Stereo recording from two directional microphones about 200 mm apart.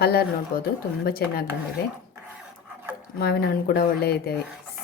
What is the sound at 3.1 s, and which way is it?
Speech, 50° left (ahead or behind).